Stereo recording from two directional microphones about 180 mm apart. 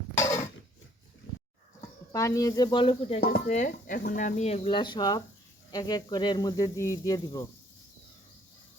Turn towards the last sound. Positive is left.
turn(degrees=20)  # may be behind; listen again after turning